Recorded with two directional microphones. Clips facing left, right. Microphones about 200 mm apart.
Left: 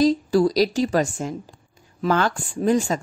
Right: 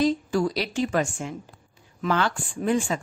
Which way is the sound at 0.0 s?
35° left (ahead or behind).